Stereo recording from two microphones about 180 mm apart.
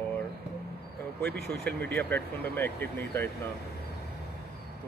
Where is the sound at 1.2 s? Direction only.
65° right (ahead or behind).